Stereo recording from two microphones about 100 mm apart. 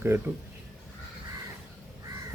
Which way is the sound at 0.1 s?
30° right (ahead or behind).